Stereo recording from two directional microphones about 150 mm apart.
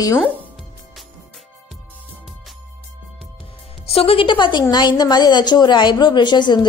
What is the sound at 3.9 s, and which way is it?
A woman's voice, 40° left (ahead or behind).